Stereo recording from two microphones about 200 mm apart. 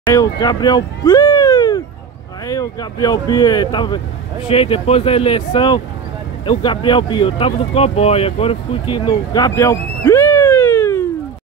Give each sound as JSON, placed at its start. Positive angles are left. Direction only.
{"t": 0.0, "sound": "speech", "side_deg": 15}